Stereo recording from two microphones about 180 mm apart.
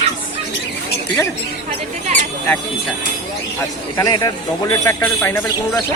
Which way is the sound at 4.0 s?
20° left (ahead or behind).